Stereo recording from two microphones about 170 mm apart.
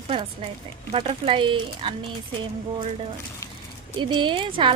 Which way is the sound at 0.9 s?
35° right (ahead or behind).